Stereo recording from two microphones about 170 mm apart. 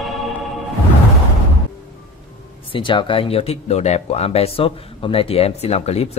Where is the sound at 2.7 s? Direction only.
30° left (ahead or behind).